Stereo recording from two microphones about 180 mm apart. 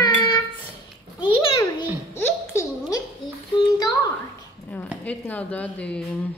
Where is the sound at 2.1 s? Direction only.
15° left (ahead or behind).